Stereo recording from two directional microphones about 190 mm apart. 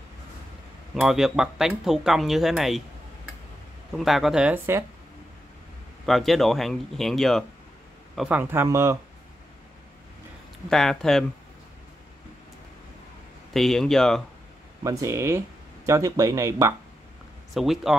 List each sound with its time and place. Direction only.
0.9 s speech: 5° right (ahead or behind)
4.0 s speech: centre (ahead or behind)
6.0 s speech: centre (ahead or behind)
10.7 s speech: centre (ahead or behind)
13.5 s speech: centre (ahead or behind)
14.8 s speech: 15° right (ahead or behind)
17.6 s speech: centre (ahead or behind)